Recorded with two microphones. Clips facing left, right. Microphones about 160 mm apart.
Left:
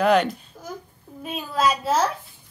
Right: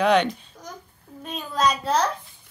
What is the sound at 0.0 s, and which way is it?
Babbling, 5° left (ahead or behind).